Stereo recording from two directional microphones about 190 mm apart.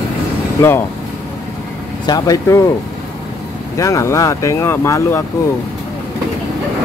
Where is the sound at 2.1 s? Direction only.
20° left (ahead or behind).